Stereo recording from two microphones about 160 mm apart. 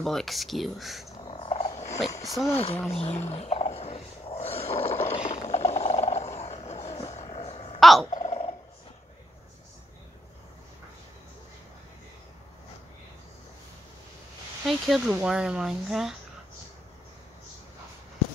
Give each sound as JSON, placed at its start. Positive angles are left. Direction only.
{"t": 0.0, "sound": "speech", "side_deg": 0}
{"t": 1.2, "sound": "purr", "side_deg": 35}
{"t": 2.5, "sound": "speech", "side_deg": 40}
{"t": 2.9, "sound": "a sound", "side_deg": 40}
{"t": 5.0, "sound": "wild animals", "side_deg": 40}
{"t": 7.8, "sound": "a sound", "side_deg": 0}
{"t": 8.1, "sound": "turkey", "side_deg": 40}
{"t": 14.7, "sound": "speech", "side_deg": -5}